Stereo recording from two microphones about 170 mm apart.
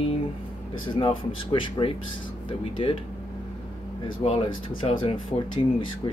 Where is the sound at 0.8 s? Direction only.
30° left (ahead or behind).